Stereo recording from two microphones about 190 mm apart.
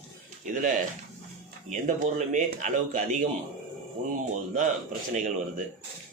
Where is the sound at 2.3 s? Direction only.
40° right (ahead or behind).